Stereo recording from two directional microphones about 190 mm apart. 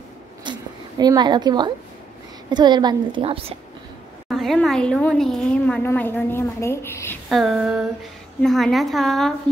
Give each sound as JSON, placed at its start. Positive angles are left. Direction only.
{"t": 0.4, "sound": "zipper", "side_deg": -20}
{"t": 2.5, "sound": "a woman's voice", "side_deg": -20}
{"t": 4.3, "sound": "a woman's voice", "side_deg": 0}
{"t": 7.2, "sound": "speech", "side_deg": 0}